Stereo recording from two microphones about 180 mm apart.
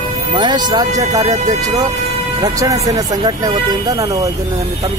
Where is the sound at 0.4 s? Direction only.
25° right (ahead or behind).